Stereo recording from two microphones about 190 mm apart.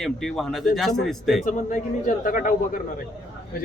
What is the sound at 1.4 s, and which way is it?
Speech, 40° left (ahead or behind).